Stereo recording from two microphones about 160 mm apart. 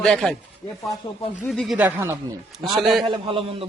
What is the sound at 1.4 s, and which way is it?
Speech, centre (ahead or behind).